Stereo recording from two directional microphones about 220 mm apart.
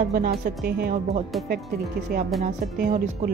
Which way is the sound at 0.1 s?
45° right (ahead or behind).